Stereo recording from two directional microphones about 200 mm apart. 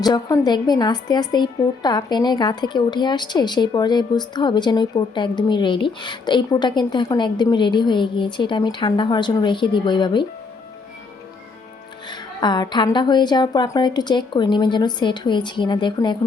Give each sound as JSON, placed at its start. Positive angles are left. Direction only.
{"t": 0.0, "sound": "a woman's voice", "side_deg": 20}
{"t": 12.0, "sound": "a woman's voice", "side_deg": 20}